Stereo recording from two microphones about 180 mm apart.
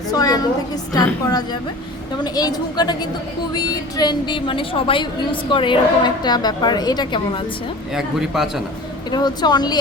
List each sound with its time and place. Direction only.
0.1 s a woman's voice: 20° left (ahead or behind)
7.9 s speech: centre (ahead or behind)
9.0 s a woman's voice: 20° left (ahead or behind)